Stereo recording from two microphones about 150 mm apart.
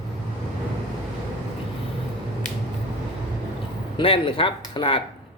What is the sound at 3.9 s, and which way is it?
Speech, 35° left (ahead or behind).